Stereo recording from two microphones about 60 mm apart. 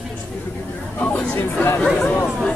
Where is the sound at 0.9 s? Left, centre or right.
Left.